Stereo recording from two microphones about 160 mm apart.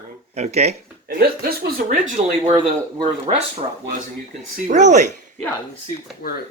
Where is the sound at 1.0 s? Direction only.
75° right (ahead or behind); by 2.6 s 50° right (ahead or behind).